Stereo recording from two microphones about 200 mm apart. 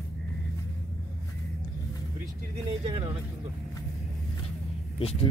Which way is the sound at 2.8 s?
25° right (ahead or behind).